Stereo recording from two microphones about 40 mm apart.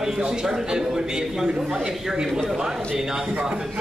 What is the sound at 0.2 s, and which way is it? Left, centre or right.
A man's voice, centre.